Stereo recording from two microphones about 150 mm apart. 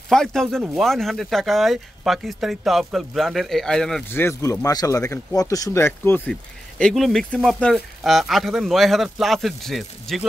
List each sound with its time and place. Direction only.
0.1 s speech: 5° left (ahead or behind)
4.1 s speech: 15° left (ahead or behind)
6.8 s speech: centre (ahead or behind)